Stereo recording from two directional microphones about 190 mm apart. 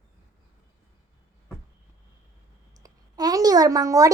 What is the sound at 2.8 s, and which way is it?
Clicking, 20° right (ahead or behind).